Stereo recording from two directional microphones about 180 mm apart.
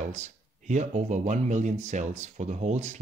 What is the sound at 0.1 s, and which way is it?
Speech, 40° right (ahead or behind).